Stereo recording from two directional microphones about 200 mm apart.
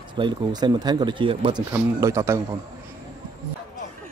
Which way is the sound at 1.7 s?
15° right (ahead or behind).